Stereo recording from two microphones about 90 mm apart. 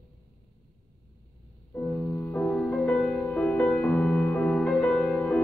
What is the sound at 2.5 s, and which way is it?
Music, 5° left (ahead or behind).